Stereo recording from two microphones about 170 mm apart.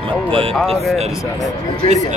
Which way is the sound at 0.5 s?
Centre (ahead or behind).